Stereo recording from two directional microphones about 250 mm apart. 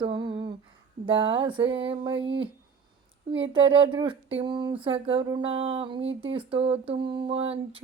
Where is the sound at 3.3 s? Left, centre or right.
Right.